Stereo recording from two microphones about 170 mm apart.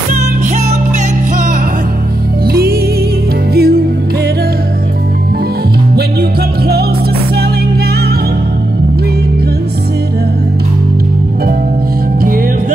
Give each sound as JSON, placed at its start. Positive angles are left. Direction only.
{"t": 3.5, "sound": "music", "side_deg": -65}